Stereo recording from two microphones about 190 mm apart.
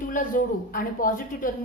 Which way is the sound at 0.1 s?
45° left (ahead or behind).